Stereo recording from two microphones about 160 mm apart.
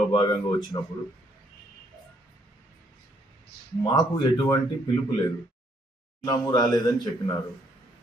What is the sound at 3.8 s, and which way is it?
Speech, 25° left (ahead or behind).